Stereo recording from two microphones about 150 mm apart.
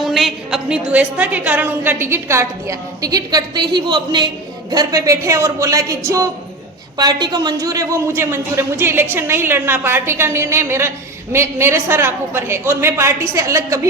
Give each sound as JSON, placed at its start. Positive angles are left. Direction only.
{"t": 0.0, "sound": "a woman's voice", "side_deg": 0}